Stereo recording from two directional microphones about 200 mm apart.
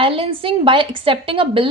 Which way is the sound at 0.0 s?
25° right (ahead or behind).